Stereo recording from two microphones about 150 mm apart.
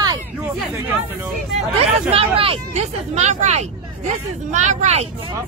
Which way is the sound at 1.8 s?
40° right (ahead or behind).